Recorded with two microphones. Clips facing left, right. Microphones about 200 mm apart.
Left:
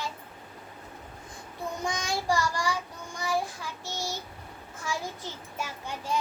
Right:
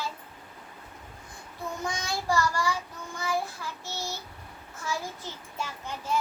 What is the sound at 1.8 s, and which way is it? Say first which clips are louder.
Child singing: left 2 dB; 15° left (ahead or behind).